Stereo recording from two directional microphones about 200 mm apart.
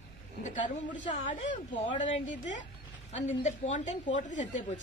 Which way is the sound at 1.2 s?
40° left (ahead or behind).